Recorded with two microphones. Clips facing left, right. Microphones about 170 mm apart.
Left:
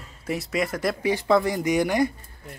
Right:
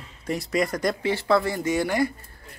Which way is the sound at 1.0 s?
15° left (ahead or behind).